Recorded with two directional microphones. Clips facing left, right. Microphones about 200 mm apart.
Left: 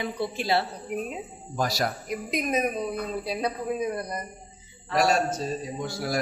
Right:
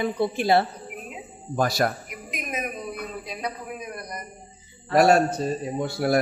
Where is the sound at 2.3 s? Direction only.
35° left (ahead or behind).